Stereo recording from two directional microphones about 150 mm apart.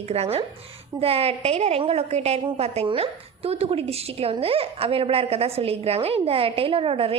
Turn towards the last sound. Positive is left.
turn(degrees=-40)  # may be behind; listen again after turning